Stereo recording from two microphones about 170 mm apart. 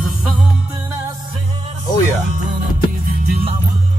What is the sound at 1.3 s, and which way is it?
Music, 35° right (ahead or behind).